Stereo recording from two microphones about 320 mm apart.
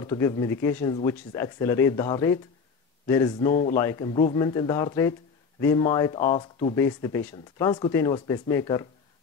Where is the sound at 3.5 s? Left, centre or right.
Left.